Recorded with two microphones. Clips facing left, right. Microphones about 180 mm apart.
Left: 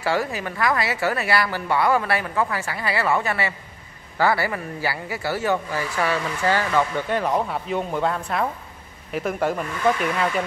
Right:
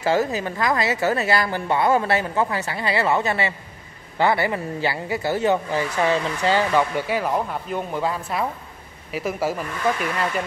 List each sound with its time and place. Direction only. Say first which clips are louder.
0.0 s speech: right 3 dB; 20° right (ahead or behind); by 10.4 s centre (ahead or behind)